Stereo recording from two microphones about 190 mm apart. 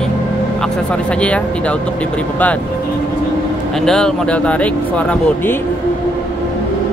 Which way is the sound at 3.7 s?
Centre (ahead or behind).